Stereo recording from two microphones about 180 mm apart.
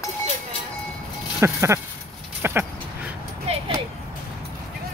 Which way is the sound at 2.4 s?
10° right (ahead or behind).